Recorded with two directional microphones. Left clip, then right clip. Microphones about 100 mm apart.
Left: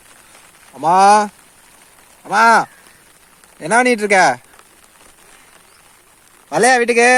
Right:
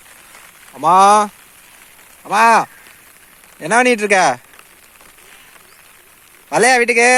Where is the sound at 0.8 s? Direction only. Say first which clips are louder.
Right 1 dB; 30° left (ahead or behind).